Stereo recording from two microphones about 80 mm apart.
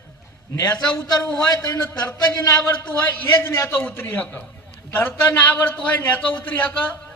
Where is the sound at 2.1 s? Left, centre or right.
Centre.